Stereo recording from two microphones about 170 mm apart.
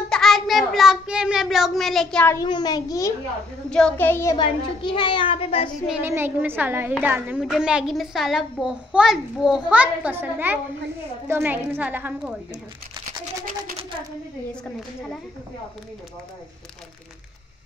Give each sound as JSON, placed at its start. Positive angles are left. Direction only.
{"t": 0.1, "sound": "child singing", "side_deg": 0}
{"t": 2.3, "sound": "a child's voice", "side_deg": 25}
{"t": 3.7, "sound": "a child's voice", "side_deg": 10}
{"t": 4.4, "sound": "speech", "side_deg": 30}
{"t": 5.9, "sound": "a woman's voice", "side_deg": -10}